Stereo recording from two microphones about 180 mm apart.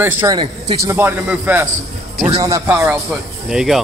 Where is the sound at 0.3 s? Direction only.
25° right (ahead or behind).